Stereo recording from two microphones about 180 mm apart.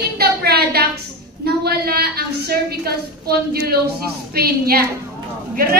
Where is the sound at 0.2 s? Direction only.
60° right (ahead or behind).